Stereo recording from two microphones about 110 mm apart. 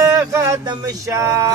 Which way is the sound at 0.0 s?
35° right (ahead or behind).